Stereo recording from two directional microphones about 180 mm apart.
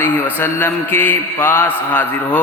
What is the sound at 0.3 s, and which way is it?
A man's voice, 10° left (ahead or behind).